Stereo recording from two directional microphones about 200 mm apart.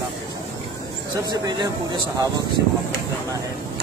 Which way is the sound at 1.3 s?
25° right (ahead or behind).